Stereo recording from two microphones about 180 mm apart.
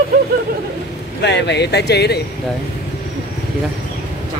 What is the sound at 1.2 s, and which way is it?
Speech, 70° left (ahead or behind).